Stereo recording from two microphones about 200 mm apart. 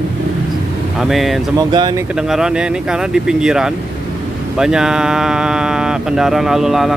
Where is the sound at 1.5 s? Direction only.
20° right (ahead or behind).